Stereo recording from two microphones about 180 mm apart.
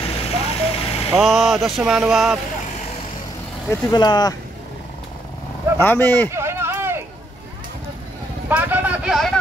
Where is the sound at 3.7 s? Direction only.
25° left (ahead or behind).